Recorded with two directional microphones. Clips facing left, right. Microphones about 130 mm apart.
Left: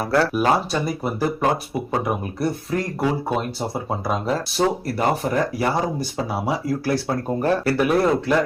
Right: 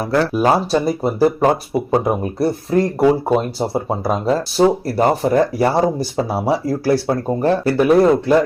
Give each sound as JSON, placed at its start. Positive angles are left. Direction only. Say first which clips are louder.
{"t": 0.0, "sound": "speech", "louder": "right 3 dB", "side_deg": -20}